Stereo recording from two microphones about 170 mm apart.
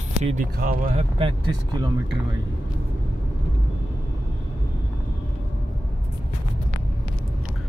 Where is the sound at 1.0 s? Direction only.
30° right (ahead or behind).